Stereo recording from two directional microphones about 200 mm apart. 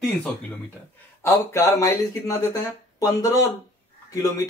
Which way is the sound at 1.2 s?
15° left (ahead or behind).